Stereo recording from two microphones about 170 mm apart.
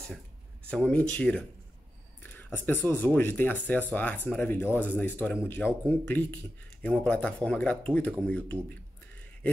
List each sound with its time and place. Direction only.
0.7 s speech: 5° left (ahead or behind)